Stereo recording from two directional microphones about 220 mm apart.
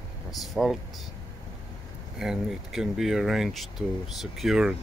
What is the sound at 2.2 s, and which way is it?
Speech, centre (ahead or behind).